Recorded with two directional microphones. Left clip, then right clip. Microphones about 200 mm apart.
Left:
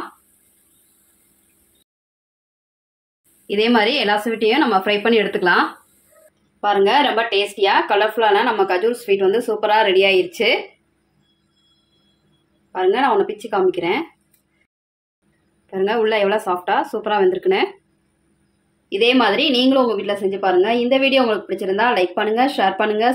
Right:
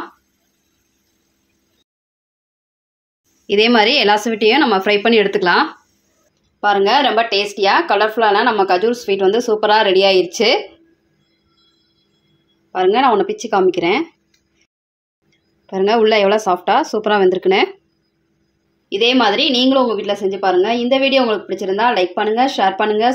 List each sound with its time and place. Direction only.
3.4 s a woman's voice: 30° right (ahead or behind)
12.7 s speech: 35° right (ahead or behind)
15.6 s a woman's voice: 30° right (ahead or behind)
18.9 s a woman's voice: 10° right (ahead or behind)